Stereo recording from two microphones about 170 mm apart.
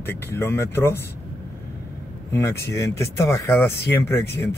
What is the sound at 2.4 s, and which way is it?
Speech, 15° left (ahead or behind).